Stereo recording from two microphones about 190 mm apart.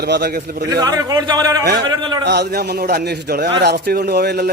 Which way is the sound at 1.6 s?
60° right (ahead or behind).